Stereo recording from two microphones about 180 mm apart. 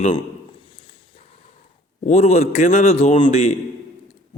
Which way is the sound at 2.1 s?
40° left (ahead or behind).